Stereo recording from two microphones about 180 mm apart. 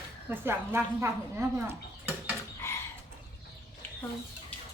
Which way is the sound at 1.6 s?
15° right (ahead or behind).